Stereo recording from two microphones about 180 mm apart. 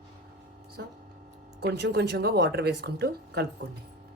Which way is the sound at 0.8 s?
65° right (ahead or behind).